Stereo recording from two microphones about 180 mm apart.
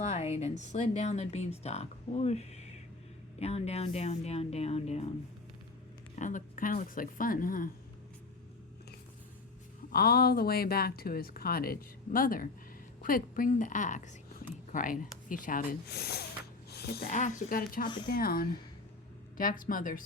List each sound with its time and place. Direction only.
0.0 s speech: 40° left (ahead or behind)
6.1 s speech: 45° left (ahead or behind)
9.9 s speech: 55° left (ahead or behind)
16.6 s a sound: 60° left (ahead or behind)
17.0 s speech: 40° left (ahead or behind)
17.8 s a woman's voice: 25° left (ahead or behind)
18.1 s speech: 55° left (ahead or behind)